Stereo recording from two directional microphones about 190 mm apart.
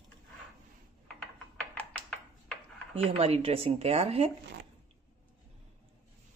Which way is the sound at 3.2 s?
30° right (ahead or behind).